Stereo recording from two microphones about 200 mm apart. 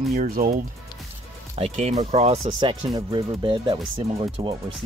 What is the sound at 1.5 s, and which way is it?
Speech, 30° right (ahead or behind).